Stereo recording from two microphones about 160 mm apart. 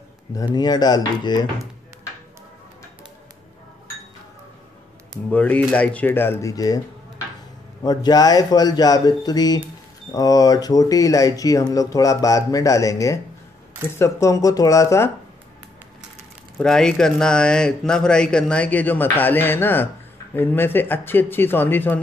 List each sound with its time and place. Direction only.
0.3 s speech: 25° left (ahead or behind)
5.3 s speech: 10° left (ahead or behind)
7.8 s speech: 25° left (ahead or behind)
16.5 s speech: 5° left (ahead or behind)